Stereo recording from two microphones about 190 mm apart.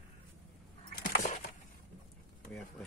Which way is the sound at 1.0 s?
45° left (ahead or behind).